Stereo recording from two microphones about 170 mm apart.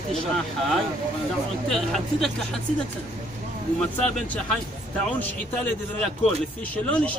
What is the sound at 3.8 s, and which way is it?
Speech, 5° left (ahead or behind).